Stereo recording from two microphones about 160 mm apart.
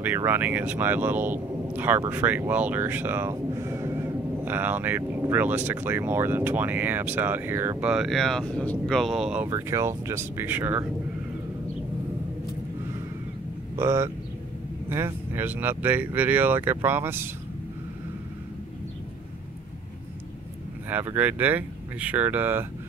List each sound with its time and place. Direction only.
0.0 s speech: 15° right (ahead or behind)
7.9 s speech: centre (ahead or behind)
9.5 s speech: 20° right (ahead or behind)
13.7 s speech: 15° right (ahead or behind)
20.9 s speech: 10° right (ahead or behind)